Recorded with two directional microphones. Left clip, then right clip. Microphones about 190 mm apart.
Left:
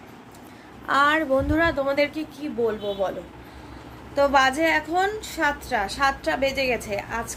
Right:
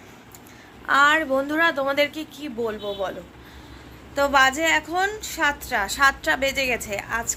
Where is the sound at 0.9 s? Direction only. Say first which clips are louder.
Right 2 dB; 10° left (ahead or behind).